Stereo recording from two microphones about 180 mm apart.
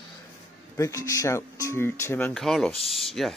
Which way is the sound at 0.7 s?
20° left (ahead or behind).